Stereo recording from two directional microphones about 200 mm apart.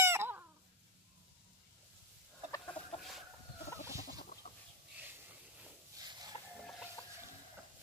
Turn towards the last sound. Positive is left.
turn(degrees=25)  # may be behind; listen again after turning